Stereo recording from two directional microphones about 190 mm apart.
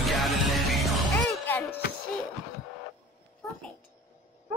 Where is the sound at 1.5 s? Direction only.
10° left (ahead or behind).